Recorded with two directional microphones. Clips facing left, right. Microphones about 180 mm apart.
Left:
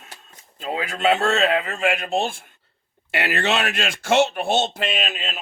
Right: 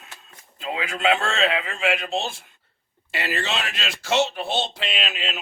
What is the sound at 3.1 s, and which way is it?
A man's voice, 60° left (ahead or behind).